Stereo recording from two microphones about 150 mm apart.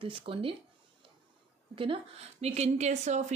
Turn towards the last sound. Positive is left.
turn(degrees=-50)  # may be behind; listen again after turning